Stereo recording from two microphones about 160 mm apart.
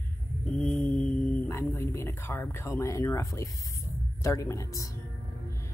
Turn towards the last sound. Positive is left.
turn(degrees=20)  # may be behind; listen again after turning